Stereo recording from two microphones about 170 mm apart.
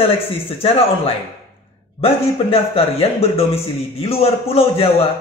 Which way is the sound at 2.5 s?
35° left (ahead or behind).